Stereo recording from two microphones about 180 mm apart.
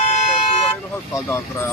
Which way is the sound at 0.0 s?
40° left (ahead or behind).